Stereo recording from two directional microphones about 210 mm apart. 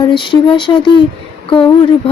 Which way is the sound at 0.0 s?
20° left (ahead or behind).